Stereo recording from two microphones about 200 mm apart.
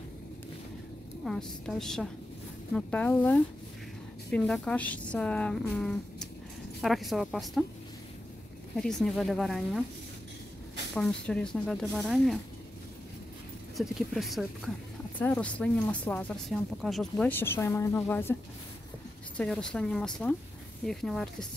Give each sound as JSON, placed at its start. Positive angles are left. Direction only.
{"t": 1.2, "sound": "a woman's voice", "side_deg": 0}
{"t": 8.7, "sound": "a woman's voice", "side_deg": 5}
{"t": 11.0, "sound": "a woman's voice", "side_deg": 5}
{"t": 13.7, "sound": "a woman's voice", "side_deg": 0}